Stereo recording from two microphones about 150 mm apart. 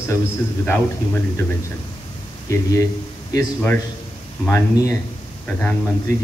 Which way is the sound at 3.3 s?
15° left (ahead or behind).